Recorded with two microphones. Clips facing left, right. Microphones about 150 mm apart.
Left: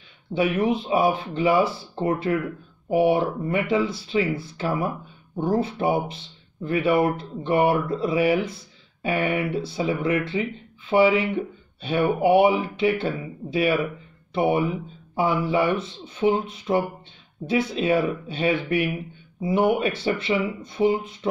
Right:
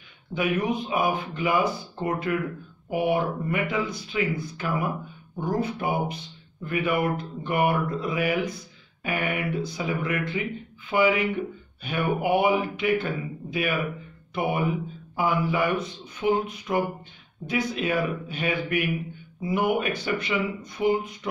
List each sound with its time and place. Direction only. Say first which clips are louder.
0.3 s speech: left 4 dB; 30° left (ahead or behind)